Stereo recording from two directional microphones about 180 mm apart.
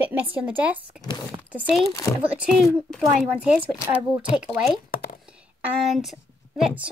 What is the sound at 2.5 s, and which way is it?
A woman's voice, centre (ahead or behind).